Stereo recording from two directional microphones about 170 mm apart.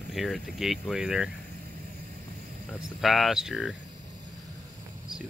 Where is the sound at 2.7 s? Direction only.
Centre (ahead or behind).